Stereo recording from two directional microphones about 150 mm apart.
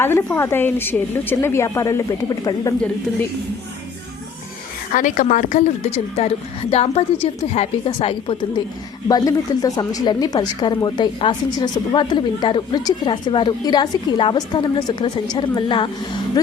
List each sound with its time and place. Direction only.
0.0 s a woman's voice: 15° left (ahead or behind)
4.9 s a woman's voice: 60° left (ahead or behind); by 15.9 s 30° left (ahead or behind)